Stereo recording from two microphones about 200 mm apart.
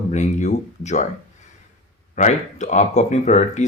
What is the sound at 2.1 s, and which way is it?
Speech, 35° left (ahead or behind).